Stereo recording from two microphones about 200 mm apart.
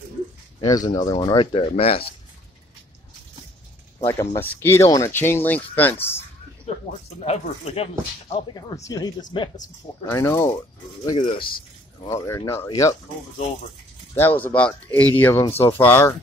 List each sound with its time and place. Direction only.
0.6 s speech: 20° left (ahead or behind)
4.0 s speech: 15° left (ahead or behind)
7.2 s speech: 30° left (ahead or behind)
10.0 s speech: 15° left (ahead or behind)
12.2 s speech: 15° left (ahead or behind)
14.1 s speech: 10° left (ahead or behind)